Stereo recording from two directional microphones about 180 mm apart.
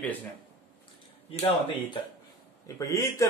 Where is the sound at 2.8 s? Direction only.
15° left (ahead or behind).